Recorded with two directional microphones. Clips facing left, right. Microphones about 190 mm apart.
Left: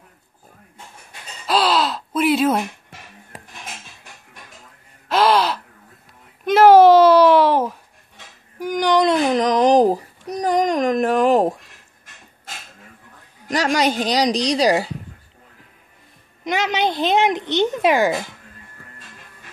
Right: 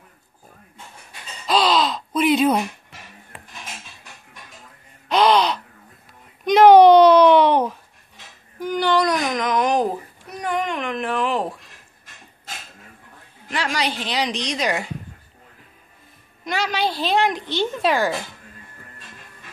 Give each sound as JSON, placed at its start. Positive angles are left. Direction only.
{"t": 1.5, "sound": "gasp", "side_deg": 5}
{"t": 3.3, "sound": "cutlery", "side_deg": 40}
{"t": 5.0, "sound": "crow", "side_deg": 5}
{"t": 6.4, "sound": "a sound", "side_deg": 5}
{"t": 13.5, "sound": "a sound", "side_deg": 45}
{"t": 16.4, "sound": "a woman's voice", "side_deg": 20}